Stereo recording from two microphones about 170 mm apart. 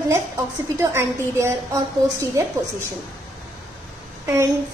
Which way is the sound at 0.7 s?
15° right (ahead or behind).